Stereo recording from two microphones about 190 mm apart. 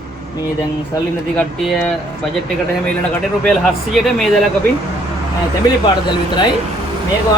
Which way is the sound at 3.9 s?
Centre (ahead or behind).